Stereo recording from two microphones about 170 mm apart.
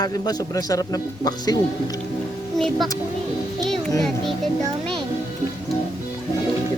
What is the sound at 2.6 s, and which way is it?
Speech, centre (ahead or behind).